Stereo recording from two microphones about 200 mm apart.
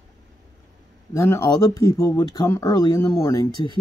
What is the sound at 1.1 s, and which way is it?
Speech, 15° left (ahead or behind).